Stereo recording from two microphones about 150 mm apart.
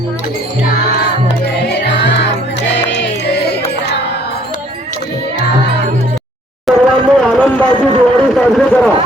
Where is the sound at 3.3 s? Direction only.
90° left.